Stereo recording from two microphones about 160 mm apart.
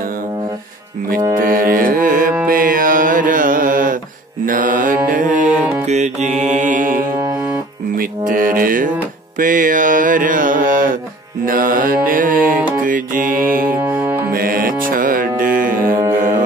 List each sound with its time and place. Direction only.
1.4 s music: 60° right (ahead or behind)
4.5 s mantra: 60° right (ahead or behind)
5.6 s music: 10° right (ahead or behind)
5.9 s mantra: 45° right (ahead or behind)
7.1 s music: 20° right (ahead or behind)
7.9 s music: 60° right (ahead or behind)
9.4 s mantra: 60° right (ahead or behind)
11.4 s music: 60° right (ahead or behind)
13.7 s music: 10° right (ahead or behind)
14.3 s music: 65° right (ahead or behind)
15.9 s music: 15° right (ahead or behind)